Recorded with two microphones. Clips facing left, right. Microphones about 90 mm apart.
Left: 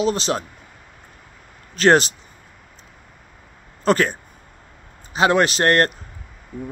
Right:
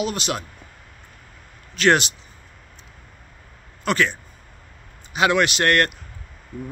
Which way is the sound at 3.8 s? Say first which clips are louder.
Left 4 dB; 40° left (ahead or behind).